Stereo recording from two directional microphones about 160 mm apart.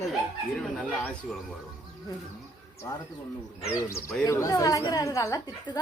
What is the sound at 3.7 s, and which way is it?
Speech, 20° left (ahead or behind).